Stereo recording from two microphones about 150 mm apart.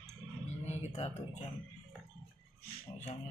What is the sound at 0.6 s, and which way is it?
Speech, 50° left (ahead or behind).